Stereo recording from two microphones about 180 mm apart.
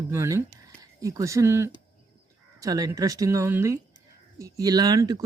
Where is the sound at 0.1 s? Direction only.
15° right (ahead or behind).